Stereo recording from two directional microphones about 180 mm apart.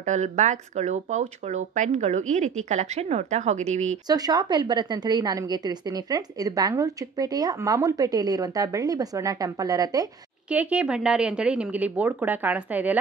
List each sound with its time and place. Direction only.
0.0 s speech: 40° right (ahead or behind)
4.1 s a woman's voice: 20° right (ahead or behind)
10.5 s a woman's voice: 10° right (ahead or behind)